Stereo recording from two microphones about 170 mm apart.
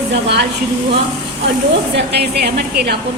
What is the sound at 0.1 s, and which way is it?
Speech, 90° right.